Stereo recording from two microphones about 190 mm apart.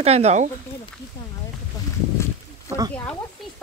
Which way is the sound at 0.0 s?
35° right (ahead or behind).